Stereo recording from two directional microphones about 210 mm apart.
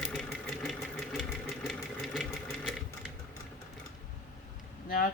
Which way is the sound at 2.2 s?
Centre (ahead or behind).